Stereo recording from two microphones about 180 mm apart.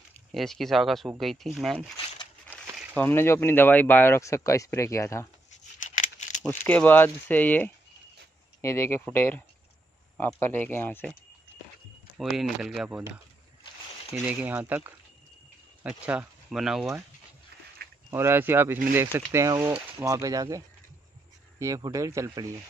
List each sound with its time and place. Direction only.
0.3 s speech: centre (ahead or behind)
2.7 s a sound: 5° right (ahead or behind)
3.0 s speech: 10° left (ahead or behind)
5.8 s a sound: 45° left (ahead or behind)
6.4 s speech: 5° left (ahead or behind)
12.2 s speech: centre (ahead or behind)
14.1 s speech: 10° right (ahead or behind)
17.8 s a sound: 60° right (ahead or behind)
18.1 s speech: 15° right (ahead or behind)